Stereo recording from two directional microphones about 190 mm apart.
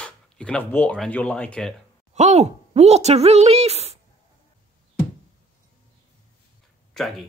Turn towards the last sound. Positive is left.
turn(degrees=5)  # may be behind; listen again after turning